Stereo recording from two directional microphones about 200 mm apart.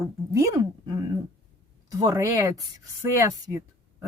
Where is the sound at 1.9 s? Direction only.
20° right (ahead or behind).